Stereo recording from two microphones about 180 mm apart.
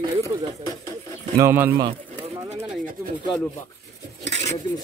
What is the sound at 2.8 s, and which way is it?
Speech, 50° right (ahead or behind).